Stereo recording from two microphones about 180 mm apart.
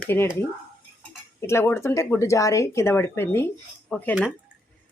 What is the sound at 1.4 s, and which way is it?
A woman's voice, 15° left (ahead or behind).